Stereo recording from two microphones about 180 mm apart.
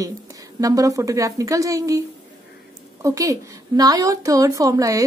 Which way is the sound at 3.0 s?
20° right (ahead or behind).